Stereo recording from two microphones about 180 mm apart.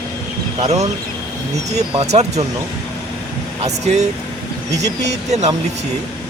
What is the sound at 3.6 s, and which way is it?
Speech, 40° right (ahead or behind).